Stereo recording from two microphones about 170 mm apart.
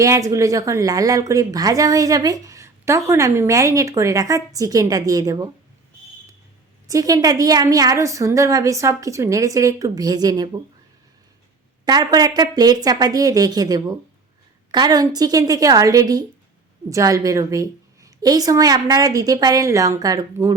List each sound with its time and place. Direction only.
0.0 s speech: 20° right (ahead or behind)
6.8 s speech: 20° right (ahead or behind)
11.9 s speech: 25° right (ahead or behind)